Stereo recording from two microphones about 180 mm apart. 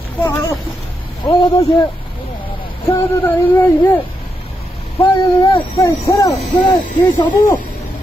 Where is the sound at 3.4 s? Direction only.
10° left (ahead or behind).